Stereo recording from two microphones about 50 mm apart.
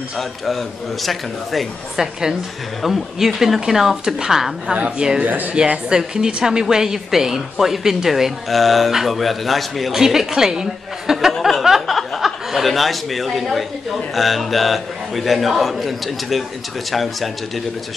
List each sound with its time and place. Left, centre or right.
0.2 s a man's voice: centre
5.2 s speech: right
5.9 s a woman's voice: centre
11.3 s a man's voice: centre
11.6 s a woman's voice: centre